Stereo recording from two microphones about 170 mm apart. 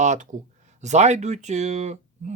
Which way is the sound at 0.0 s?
45° right (ahead or behind).